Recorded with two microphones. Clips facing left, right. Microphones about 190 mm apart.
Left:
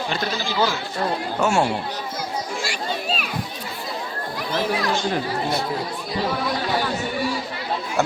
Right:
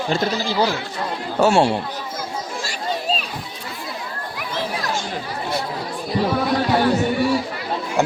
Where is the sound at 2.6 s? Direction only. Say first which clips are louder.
Right 2 dB; 35° right (ahead or behind).